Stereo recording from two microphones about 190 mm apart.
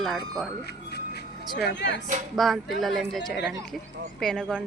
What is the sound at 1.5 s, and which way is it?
Speech, 65° left (ahead or behind).